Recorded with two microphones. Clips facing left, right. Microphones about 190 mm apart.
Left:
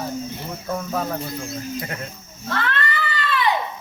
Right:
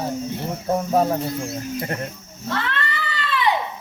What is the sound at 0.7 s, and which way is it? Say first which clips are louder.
Cricket: right 6 dB; 40° right (ahead or behind).